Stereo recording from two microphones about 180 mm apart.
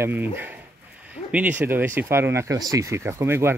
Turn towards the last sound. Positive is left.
turn(degrees=-15)  # may be behind; listen again after turning